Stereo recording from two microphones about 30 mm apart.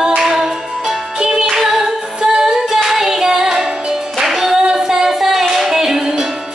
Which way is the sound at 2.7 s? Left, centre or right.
Centre.